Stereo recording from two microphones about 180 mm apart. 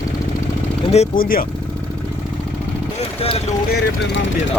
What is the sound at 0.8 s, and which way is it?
Speech, 35° left (ahead or behind).